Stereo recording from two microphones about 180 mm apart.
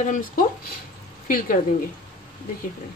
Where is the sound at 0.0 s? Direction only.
50° left (ahead or behind).